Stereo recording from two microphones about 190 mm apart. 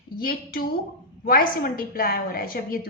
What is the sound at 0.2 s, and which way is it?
A woman's voice, 50° left (ahead or behind).